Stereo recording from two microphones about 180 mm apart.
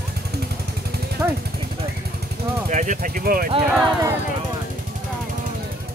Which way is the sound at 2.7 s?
45° right (ahead or behind).